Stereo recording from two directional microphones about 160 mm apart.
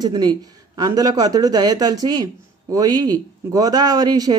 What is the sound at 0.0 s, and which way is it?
Speech, 25° right (ahead or behind).